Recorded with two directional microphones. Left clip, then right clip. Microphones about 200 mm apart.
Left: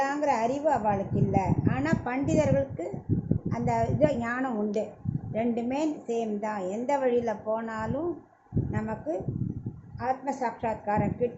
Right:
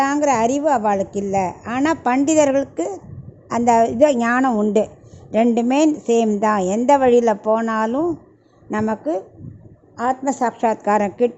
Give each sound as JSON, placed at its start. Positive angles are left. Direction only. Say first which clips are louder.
{"t": 0.0, "sound": "a woman's voice", "louder": "right 9 dB", "side_deg": -60}